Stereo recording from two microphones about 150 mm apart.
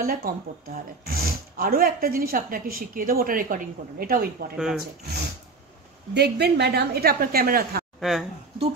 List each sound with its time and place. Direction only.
0.0 s speech: 80° right
1.0 s speech: 90° right
4.6 s speech: 5° right (ahead or behind)
6.1 s a woman's voice: 90° right
8.0 s speech: centre (ahead or behind)